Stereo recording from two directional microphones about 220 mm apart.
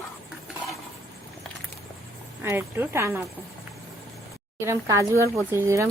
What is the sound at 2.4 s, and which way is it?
Speech, 10° right (ahead or behind).